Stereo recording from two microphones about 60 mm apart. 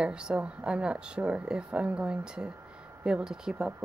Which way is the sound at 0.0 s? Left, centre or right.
Centre.